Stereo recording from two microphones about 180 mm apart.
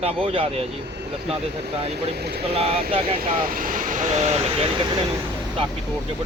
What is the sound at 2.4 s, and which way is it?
Speech, 30° right (ahead or behind).